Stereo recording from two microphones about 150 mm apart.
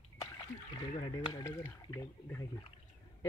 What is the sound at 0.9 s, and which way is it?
Speech, 30° left (ahead or behind).